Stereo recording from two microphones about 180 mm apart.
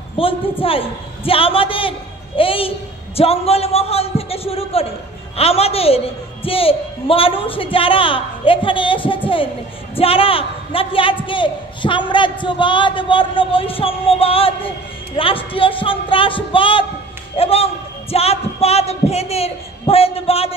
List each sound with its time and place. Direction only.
0.2 s a man's voice: 30° left (ahead or behind)